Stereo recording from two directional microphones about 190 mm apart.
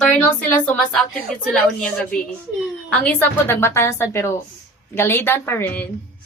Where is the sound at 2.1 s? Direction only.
5° left (ahead or behind).